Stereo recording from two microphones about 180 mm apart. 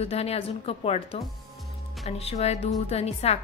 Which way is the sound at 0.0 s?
35° left (ahead or behind).